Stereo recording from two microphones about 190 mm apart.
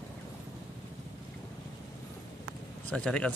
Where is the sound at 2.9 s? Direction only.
5° left (ahead or behind).